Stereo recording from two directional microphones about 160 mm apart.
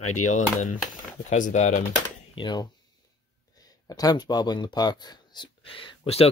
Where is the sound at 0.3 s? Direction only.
50° left (ahead or behind).